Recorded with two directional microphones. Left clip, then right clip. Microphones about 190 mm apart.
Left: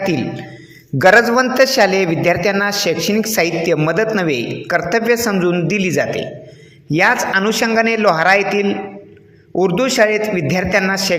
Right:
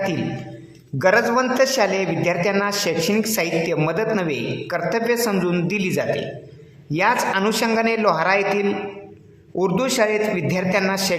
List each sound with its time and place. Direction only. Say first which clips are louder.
0.9 s a man's voice: left 7 dB; 20° left (ahead or behind)